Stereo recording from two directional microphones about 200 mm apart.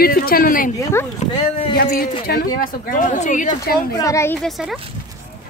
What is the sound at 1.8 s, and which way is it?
Speech, 50° left (ahead or behind).